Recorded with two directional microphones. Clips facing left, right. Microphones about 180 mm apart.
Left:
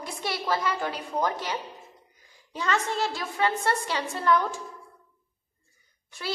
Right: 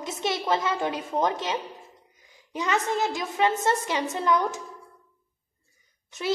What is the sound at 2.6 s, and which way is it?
A woman's voice, 15° right (ahead or behind).